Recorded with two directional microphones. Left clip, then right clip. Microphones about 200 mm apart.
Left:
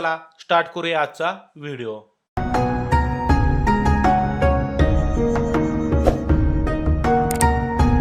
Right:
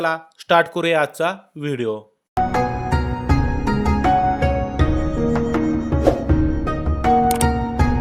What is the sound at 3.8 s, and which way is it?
Music, centre (ahead or behind).